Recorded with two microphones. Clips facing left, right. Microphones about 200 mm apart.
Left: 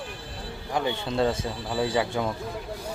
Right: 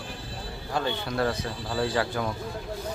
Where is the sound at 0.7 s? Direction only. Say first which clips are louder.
Left 2 dB; 15° left (ahead or behind).